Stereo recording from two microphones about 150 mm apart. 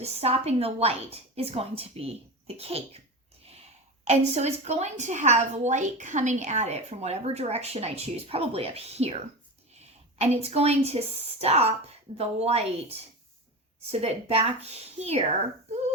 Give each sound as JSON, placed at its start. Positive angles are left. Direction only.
{"t": 0.0, "sound": "a woman's voice", "side_deg": -45}
{"t": 4.0, "sound": "a woman's voice", "side_deg": -45}